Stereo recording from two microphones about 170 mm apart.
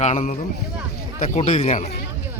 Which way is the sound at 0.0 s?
45° left (ahead or behind).